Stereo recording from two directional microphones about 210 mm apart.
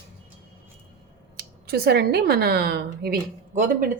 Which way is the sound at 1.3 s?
50° right (ahead or behind).